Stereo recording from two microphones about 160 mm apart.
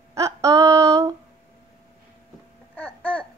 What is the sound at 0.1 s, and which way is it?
Female singing, 20° right (ahead or behind).